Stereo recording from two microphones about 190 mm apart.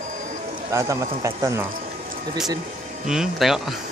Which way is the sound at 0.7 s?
15° right (ahead or behind).